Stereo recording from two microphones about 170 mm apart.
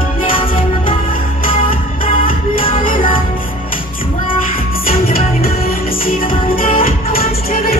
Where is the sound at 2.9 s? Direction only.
55° left (ahead or behind).